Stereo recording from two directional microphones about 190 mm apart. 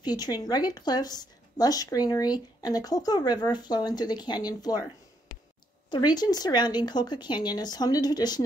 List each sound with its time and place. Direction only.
0.0 s a woman's voice: 20° left (ahead or behind)
5.9 s a woman's voice: 20° left (ahead or behind)